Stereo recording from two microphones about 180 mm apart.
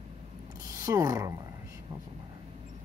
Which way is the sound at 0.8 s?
20° right (ahead or behind).